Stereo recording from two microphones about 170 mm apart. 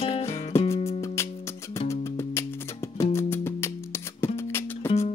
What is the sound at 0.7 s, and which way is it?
Music, 40° left (ahead or behind).